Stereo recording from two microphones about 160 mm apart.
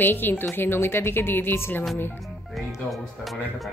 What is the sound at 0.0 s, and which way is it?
Speech, 10° left (ahead or behind).